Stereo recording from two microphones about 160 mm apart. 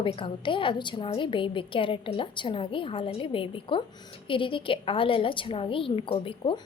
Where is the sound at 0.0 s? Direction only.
30° left (ahead or behind).